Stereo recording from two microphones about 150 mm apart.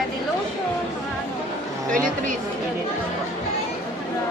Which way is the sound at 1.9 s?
65° right (ahead or behind).